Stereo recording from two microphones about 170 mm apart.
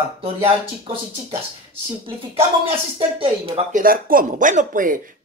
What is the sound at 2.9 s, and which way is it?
Speech, 35° right (ahead or behind).